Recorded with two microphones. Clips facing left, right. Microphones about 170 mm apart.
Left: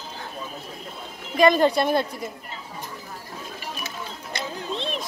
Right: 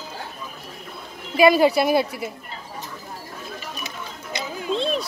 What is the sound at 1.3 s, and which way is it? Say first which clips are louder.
Speech: right 2 dB; 10° right (ahead or behind).